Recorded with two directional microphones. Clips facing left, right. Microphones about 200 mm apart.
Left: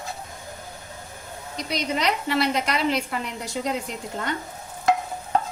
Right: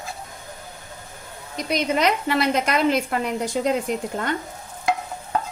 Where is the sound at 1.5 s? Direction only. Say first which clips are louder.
Right 5 dB; 50° right (ahead or behind).